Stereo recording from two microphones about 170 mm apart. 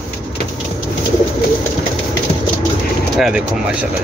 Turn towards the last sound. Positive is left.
turn(degrees=-5)  # may be behind; listen again after turning